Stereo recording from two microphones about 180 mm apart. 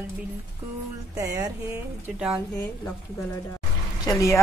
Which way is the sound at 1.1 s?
20° right (ahead or behind).